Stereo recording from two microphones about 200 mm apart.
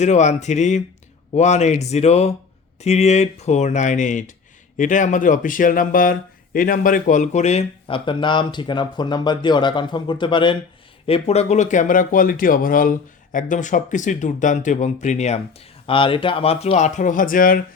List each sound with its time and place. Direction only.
0.0 s speech: 35° left (ahead or behind)